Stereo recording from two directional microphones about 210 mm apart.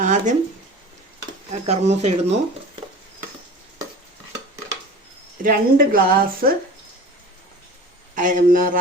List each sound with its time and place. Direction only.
0.0 s a sound: 35° right (ahead or behind)
1.6 s speech: 30° right (ahead or behind)
5.4 s a woman's voice: 40° right (ahead or behind)
8.1 s speech: 40° right (ahead or behind)